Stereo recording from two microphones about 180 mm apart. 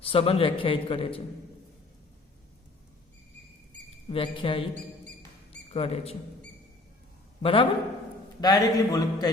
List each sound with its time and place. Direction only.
0.0 s a man's voice: 30° left (ahead or behind)
4.1 s a man's voice: 30° left (ahead or behind)
5.7 s a man's voice: 35° left (ahead or behind)
7.4 s a man's voice: 30° left (ahead or behind)